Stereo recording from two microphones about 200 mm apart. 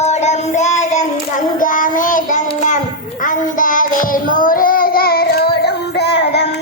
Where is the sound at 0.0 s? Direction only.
35° left (ahead or behind).